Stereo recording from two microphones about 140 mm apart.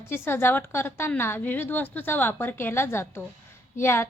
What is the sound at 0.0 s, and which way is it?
A woman's voice, 15° left (ahead or behind).